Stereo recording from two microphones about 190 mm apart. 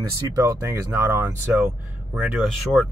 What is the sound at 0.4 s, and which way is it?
Speech, 15° right (ahead or behind).